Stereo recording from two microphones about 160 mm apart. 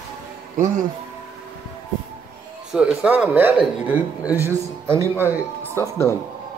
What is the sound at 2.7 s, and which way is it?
Speech, 5° right (ahead or behind).